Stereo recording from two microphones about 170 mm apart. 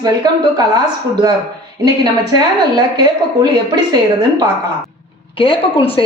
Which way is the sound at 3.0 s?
25° right (ahead or behind).